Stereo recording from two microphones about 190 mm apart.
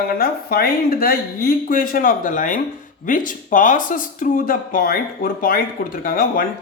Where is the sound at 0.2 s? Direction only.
50° left (ahead or behind).